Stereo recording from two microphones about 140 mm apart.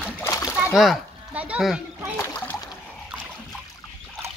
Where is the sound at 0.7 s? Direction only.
Centre (ahead or behind).